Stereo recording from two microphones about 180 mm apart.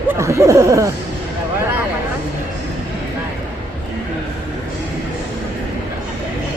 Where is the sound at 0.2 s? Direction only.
15° right (ahead or behind).